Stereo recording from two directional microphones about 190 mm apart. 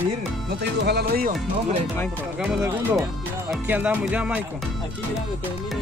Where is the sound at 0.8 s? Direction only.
55° right (ahead or behind).